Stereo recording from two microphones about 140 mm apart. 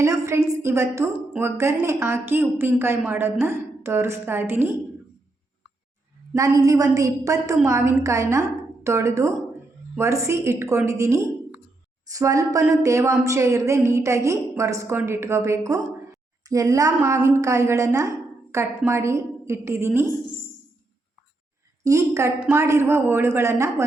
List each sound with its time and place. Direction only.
0.0 s a woman's voice: 20° right (ahead or behind)
6.3 s a woman's voice: 25° right (ahead or behind)
21.8 s a woman's voice: 20° right (ahead or behind)